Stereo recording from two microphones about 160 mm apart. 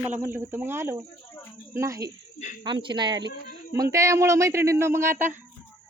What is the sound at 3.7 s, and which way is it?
Speech, 20° right (ahead or behind).